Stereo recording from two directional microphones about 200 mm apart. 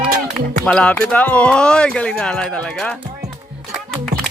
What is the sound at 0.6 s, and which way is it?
Speech, 5° left (ahead or behind).